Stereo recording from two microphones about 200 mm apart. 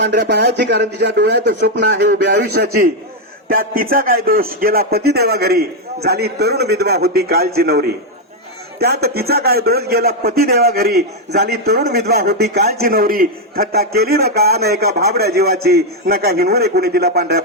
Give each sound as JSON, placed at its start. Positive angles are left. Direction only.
{"t": 0.0, "sound": "a man's voice", "side_deg": -60}